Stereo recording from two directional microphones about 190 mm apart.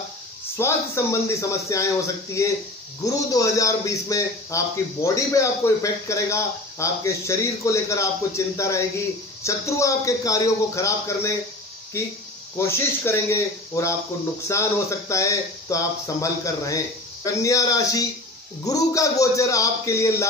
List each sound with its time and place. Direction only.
0.6 s a man's voice: 15° left (ahead or behind)
12.5 s a man's voice: 15° left (ahead or behind)